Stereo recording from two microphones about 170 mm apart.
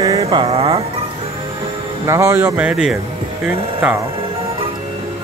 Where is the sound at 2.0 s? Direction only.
15° right (ahead or behind).